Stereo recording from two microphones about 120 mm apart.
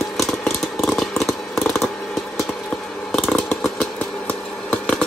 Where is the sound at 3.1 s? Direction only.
5° left (ahead or behind).